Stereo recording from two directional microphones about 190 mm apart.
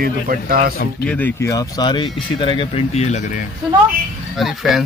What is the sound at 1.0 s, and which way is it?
Speech, 10° left (ahead or behind).